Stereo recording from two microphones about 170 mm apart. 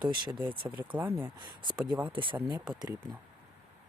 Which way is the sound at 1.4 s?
25° right (ahead or behind).